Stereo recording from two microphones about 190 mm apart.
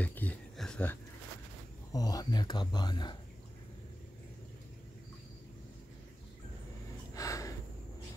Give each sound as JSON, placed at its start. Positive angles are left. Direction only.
{"t": 0.0, "sound": "a sound", "side_deg": 10}
{"t": 1.9, "sound": "speech", "side_deg": 20}
{"t": 7.2, "sound": "gasp", "side_deg": 15}